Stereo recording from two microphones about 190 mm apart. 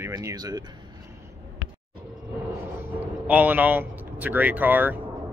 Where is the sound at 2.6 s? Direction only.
10° right (ahead or behind).